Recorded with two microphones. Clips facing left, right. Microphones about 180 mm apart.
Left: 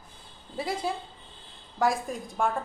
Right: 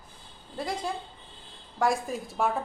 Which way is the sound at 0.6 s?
5° left (ahead or behind).